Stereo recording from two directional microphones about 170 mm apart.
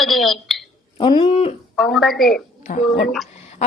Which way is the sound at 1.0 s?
30° left (ahead or behind).